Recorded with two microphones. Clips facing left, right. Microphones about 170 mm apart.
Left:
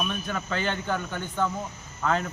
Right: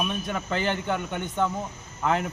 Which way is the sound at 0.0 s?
20° right (ahead or behind).